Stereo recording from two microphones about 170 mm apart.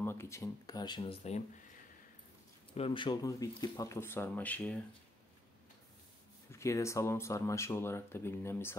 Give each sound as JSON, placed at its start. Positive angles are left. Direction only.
{"t": 0.0, "sound": "speech", "side_deg": 15}
{"t": 2.7, "sound": "speech", "side_deg": 30}
{"t": 6.5, "sound": "speech", "side_deg": 15}